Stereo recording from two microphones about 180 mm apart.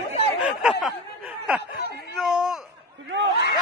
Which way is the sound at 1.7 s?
65° left (ahead or behind).